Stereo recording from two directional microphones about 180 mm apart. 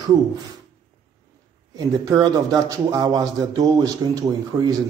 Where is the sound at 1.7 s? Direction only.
20° right (ahead or behind).